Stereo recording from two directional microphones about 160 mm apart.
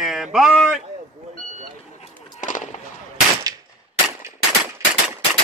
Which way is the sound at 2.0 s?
50° left (ahead or behind).